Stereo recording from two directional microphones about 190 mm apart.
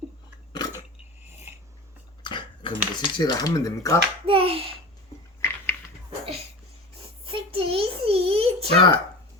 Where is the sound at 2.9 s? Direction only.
25° left (ahead or behind).